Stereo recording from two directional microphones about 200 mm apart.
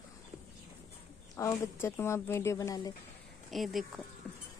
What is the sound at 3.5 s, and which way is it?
Speech, centre (ahead or behind).